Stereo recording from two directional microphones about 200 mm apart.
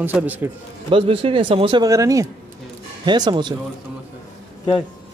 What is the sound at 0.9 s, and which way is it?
Speech, 25° right (ahead or behind).